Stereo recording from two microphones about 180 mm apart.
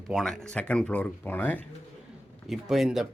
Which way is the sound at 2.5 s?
Centre (ahead or behind).